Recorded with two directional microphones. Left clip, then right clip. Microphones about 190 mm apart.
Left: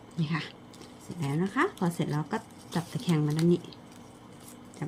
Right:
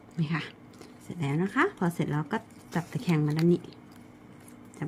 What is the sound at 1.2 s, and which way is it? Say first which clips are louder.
Speech: right 2 dB; 20° right (ahead or behind).